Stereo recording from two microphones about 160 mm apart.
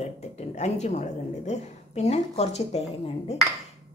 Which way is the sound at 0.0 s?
40° left (ahead or behind).